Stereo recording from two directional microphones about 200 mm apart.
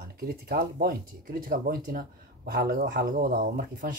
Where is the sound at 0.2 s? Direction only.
50° right (ahead or behind).